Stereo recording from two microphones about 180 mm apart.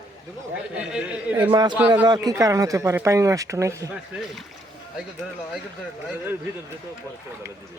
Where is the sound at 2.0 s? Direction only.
25° right (ahead or behind).